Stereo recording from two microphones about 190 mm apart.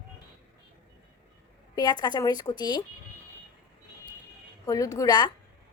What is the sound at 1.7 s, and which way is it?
A woman's voice, 20° left (ahead or behind).